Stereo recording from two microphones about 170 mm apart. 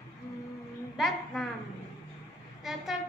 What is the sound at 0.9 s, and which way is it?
Speech, centre (ahead or behind).